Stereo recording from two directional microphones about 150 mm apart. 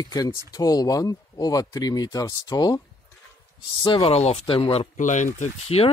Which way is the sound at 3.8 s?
30° left (ahead or behind).